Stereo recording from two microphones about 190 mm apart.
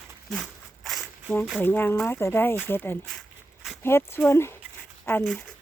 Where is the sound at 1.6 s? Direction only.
10° left (ahead or behind).